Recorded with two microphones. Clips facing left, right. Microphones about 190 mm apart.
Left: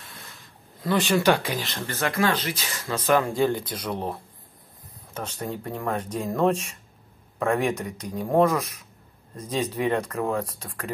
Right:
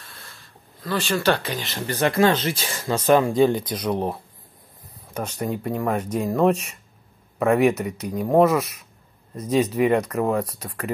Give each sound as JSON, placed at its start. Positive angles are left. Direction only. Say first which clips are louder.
{"t": 0.0, "sound": "a sound", "louder": "left 1 dB", "side_deg": 20}
{"t": 1.9, "sound": "speech", "louder": "right 6 dB", "side_deg": -25}
{"t": 5.1, "sound": "speech", "louder": "right 5 dB", "side_deg": -10}